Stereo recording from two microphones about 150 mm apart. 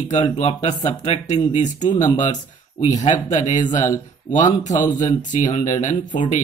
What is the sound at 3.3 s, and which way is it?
Speech, 50° left (ahead or behind).